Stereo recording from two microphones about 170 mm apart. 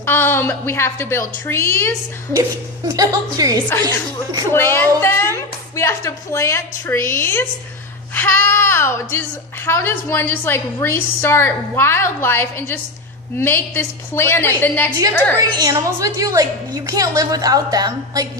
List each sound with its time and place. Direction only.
0.0 s a woman's voice: 15° left (ahead or behind)
2.3 s a woman's voice: 20° right (ahead or behind)
4.5 s a woman's voice: 15° left (ahead or behind)
15.4 s a woman's voice: 20° right (ahead or behind)